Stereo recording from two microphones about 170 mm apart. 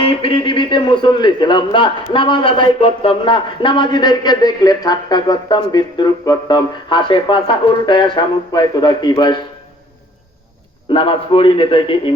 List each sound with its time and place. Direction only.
0.0 s a man's voice: 35° left (ahead or behind)
10.9 s a man's voice: 30° left (ahead or behind)